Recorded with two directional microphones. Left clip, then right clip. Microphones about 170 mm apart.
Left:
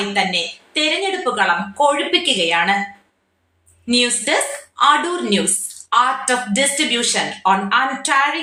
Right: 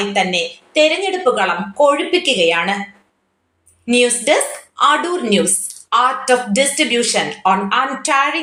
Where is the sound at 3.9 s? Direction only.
20° right (ahead or behind).